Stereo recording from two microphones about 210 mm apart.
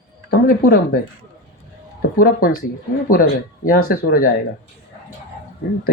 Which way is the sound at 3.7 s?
40° left (ahead or behind).